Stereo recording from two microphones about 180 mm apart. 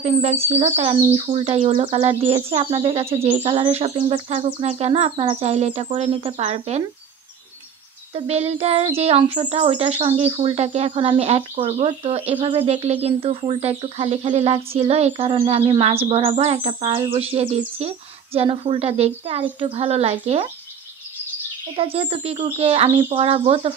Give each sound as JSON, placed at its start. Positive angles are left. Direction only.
{"t": 0.0, "sound": "speech", "side_deg": -35}
{"t": 8.1, "sound": "speech", "side_deg": -35}
{"t": 21.7, "sound": "speech", "side_deg": -30}